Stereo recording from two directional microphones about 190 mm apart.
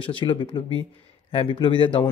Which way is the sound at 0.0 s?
25° left (ahead or behind).